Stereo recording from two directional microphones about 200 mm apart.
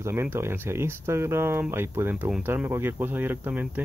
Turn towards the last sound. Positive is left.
turn(degrees=-10)  # may be behind; listen again after turning